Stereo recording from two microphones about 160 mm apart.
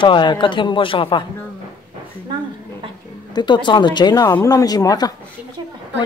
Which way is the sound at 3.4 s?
30° left (ahead or behind).